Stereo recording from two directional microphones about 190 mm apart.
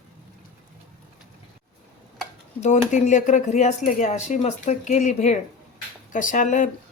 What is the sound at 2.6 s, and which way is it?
Speech, 40° left (ahead or behind).